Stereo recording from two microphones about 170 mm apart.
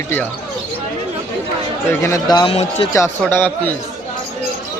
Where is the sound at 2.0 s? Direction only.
20° left (ahead or behind).